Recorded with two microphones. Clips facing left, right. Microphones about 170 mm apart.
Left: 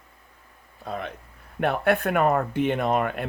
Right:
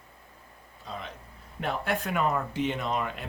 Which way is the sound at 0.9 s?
55° left (ahead or behind).